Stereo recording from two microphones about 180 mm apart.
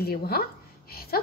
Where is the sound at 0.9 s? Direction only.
60° left (ahead or behind).